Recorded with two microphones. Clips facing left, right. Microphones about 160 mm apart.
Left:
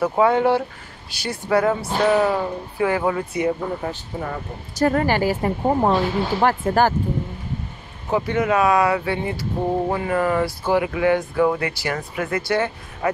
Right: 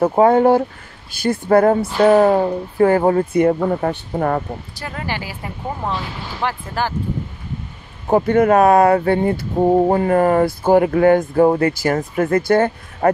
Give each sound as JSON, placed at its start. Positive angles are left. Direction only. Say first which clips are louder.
{"t": 0.1, "sound": "speech", "louder": "right 5 dB", "side_deg": -40}
{"t": 3.5, "sound": "speech", "louder": "right 7 dB", "side_deg": -65}
{"t": 4.7, "sound": "speech", "louder": "left 11 dB", "side_deg": 45}
{"t": 8.1, "sound": "speech", "louder": "right 7 dB", "side_deg": -50}